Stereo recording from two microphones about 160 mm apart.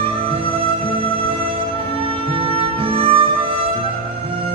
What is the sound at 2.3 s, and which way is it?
Music, 35° right (ahead or behind).